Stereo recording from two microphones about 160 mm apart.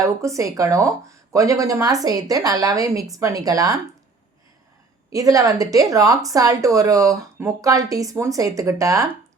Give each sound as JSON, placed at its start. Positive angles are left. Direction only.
{"t": 0.0, "sound": "speech", "side_deg": -20}
{"t": 5.1, "sound": "speech", "side_deg": -20}